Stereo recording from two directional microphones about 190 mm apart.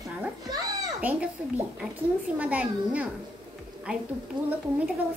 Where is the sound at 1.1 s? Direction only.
10° right (ahead or behind).